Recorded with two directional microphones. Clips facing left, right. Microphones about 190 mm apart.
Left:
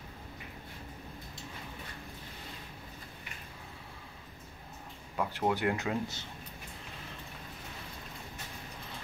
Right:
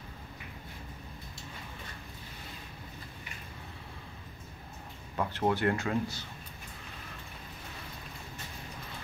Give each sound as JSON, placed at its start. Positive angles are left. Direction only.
{"t": 5.1, "sound": "speech", "side_deg": 5}